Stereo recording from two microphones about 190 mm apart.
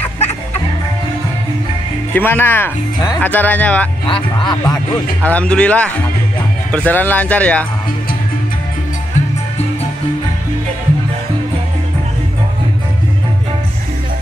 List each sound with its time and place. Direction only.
2.1 s speech: 10° left (ahead or behind)
4.1 s speech: 25° left (ahead or behind)
5.2 s speech: 5° left (ahead or behind)